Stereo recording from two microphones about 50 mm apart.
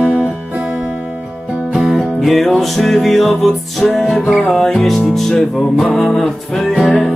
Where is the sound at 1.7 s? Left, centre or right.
Centre.